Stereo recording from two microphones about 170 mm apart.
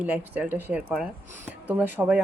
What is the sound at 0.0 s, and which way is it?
A woman's voice, 10° right (ahead or behind).